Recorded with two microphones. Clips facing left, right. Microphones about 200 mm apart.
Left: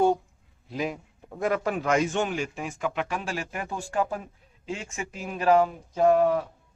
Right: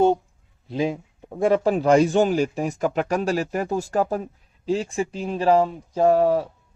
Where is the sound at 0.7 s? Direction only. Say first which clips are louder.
Right 6 dB; 30° right (ahead or behind).